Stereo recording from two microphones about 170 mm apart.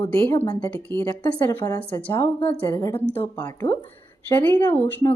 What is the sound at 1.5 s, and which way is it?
A woman's voice, 15° left (ahead or behind).